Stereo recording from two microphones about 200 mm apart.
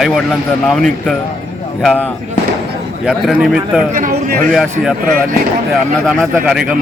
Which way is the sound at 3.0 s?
5° right (ahead or behind).